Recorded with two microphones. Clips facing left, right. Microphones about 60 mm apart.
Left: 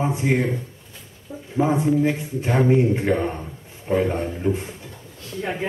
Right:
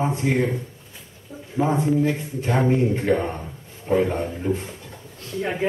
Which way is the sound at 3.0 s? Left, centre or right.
Centre.